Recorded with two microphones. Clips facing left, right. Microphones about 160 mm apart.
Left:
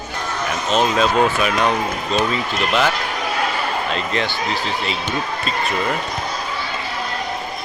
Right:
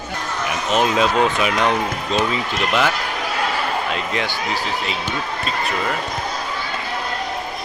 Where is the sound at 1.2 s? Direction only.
20° right (ahead or behind).